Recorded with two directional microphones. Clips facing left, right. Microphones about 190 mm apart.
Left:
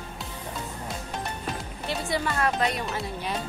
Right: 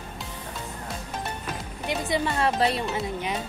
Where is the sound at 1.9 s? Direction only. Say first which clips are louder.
Right 2 dB; 20° right (ahead or behind).